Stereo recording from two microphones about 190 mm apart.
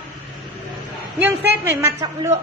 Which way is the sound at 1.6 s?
15° right (ahead or behind).